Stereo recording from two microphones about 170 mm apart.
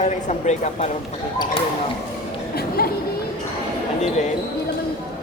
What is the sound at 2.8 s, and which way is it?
Chatter, 65° left (ahead or behind).